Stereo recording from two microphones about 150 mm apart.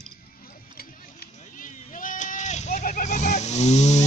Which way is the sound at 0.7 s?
75° left (ahead or behind).